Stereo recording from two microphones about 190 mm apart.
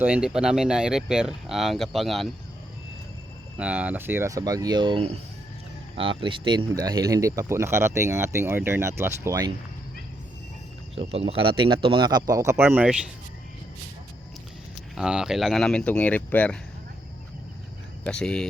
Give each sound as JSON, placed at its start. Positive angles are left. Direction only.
{"t": 0.0, "sound": "speech", "side_deg": -5}
{"t": 3.6, "sound": "speech", "side_deg": -5}
{"t": 10.9, "sound": "speech", "side_deg": -30}
{"t": 14.9, "sound": "speech", "side_deg": -5}
{"t": 18.0, "sound": "speech", "side_deg": 5}